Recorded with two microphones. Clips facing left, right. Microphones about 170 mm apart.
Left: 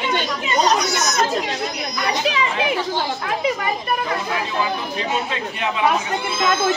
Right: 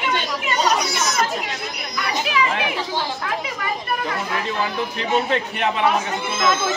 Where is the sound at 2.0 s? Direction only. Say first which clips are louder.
Left 1 dB; 30° left (ahead or behind).